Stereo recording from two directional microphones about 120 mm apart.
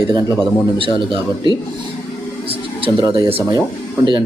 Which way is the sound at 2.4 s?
50° right (ahead or behind).